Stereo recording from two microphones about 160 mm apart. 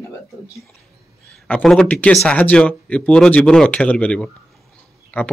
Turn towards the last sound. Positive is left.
turn(degrees=10)  # may be behind; listen again after turning